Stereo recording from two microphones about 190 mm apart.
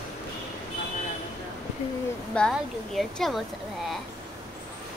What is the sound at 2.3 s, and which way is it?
Speech, 5° left (ahead or behind).